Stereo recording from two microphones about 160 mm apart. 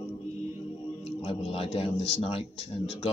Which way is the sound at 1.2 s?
35° left (ahead or behind).